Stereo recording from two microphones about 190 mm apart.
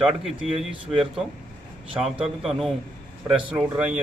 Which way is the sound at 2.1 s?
Centre (ahead or behind).